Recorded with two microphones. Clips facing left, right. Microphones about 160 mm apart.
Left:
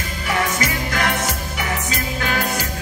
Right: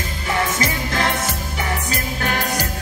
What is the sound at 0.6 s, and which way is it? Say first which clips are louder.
Music: even; 30° right (ahead or behind).